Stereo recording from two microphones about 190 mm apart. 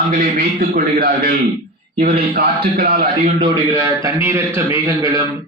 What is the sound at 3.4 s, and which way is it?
A man's voice, 15° right (ahead or behind).